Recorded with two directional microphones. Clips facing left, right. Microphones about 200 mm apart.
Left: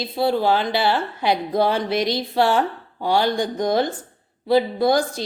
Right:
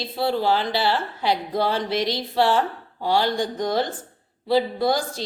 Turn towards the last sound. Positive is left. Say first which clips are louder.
# left 4 dB
turn(degrees=15)  # may be behind; listen again after turning